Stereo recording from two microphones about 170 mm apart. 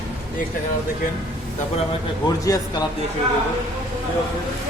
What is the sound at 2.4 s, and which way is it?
Speech, 25° left (ahead or behind).